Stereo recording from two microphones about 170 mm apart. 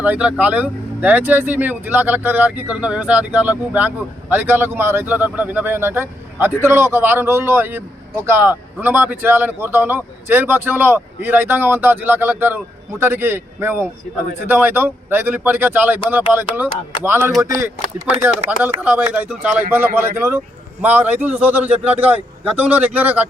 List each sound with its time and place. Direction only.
0.0 s speech: 10° right (ahead or behind)